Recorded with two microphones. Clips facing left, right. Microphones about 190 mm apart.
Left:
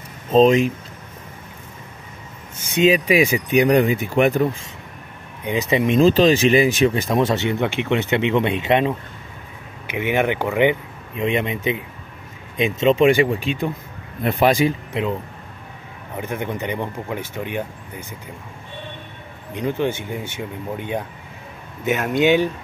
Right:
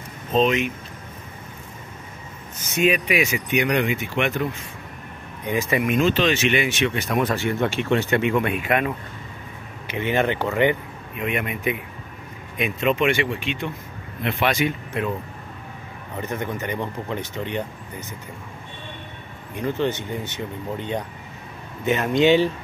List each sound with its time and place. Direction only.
0.3 s speech: 35° left (ahead or behind)
2.8 s speech: 30° left (ahead or behind)
5.4 s speech: 20° left (ahead or behind)
9.9 s speech: 15° left (ahead or behind)
11.1 s speech: 25° left (ahead or behind)
16.2 s speech: 10° left (ahead or behind)
19.5 s speech: 15° left (ahead or behind)